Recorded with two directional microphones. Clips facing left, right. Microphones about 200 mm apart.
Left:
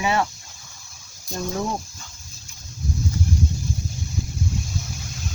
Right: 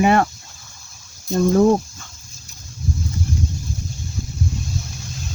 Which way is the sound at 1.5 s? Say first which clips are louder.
Right 13 dB; 50° right (ahead or behind).